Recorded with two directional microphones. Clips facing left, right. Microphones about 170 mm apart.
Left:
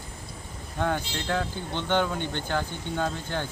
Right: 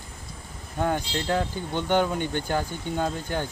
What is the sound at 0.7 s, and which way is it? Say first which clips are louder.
Speech: right 2 dB; 10° right (ahead or behind).